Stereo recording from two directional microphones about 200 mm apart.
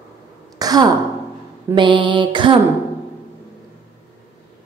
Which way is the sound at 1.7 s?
25° right (ahead or behind).